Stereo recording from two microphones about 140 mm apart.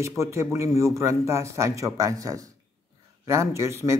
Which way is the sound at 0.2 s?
20° right (ahead or behind).